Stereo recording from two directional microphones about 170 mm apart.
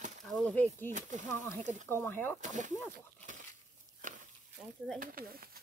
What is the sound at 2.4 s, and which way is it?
Speech, 45° right (ahead or behind).